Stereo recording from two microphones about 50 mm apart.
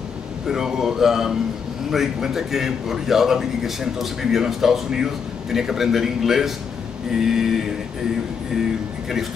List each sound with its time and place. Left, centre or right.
0.5 s a man's voice: centre